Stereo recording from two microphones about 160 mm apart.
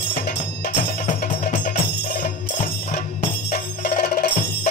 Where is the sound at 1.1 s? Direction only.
50° left (ahead or behind).